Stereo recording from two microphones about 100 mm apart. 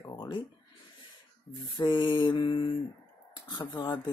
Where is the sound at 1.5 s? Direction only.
40° left (ahead or behind).